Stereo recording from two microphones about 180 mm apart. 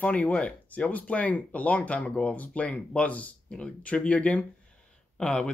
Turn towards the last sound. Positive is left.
turn(degrees=5)  # may be behind; listen again after turning